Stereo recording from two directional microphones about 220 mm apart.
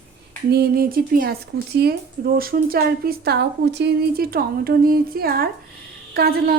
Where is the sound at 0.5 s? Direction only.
45° right (ahead or behind).